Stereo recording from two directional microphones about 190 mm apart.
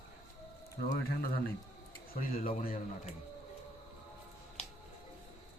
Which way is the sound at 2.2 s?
50° left (ahead or behind).